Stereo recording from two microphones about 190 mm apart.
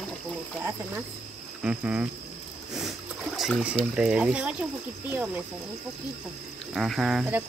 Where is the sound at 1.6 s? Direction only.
5° right (ahead or behind).